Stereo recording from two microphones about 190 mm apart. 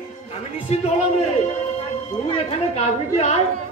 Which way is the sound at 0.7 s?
35° left (ahead or behind).